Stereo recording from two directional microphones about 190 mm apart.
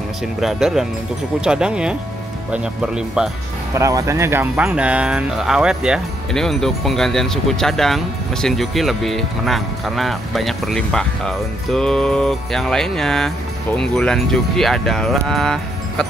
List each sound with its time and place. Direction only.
0.4 s speech: centre (ahead or behind)
3.7 s speech: 15° right (ahead or behind); by 16.1 s centre (ahead or behind)